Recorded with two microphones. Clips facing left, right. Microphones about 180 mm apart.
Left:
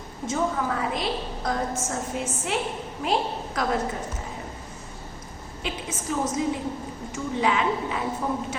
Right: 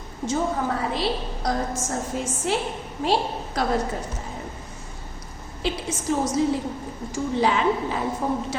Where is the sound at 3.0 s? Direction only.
35° right (ahead or behind).